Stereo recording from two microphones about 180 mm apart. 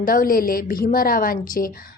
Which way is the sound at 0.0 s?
50° left (ahead or behind).